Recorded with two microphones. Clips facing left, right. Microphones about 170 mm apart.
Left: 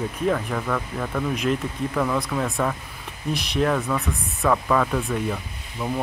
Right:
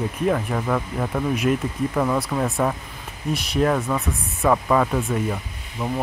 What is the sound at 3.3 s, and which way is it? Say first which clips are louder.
Speech: right 2 dB; 5° right (ahead or behind).